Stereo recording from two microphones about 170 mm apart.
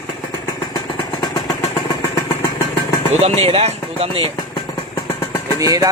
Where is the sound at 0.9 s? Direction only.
30° left (ahead or behind).